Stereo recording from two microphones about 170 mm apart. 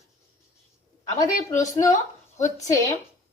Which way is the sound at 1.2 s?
20° left (ahead or behind).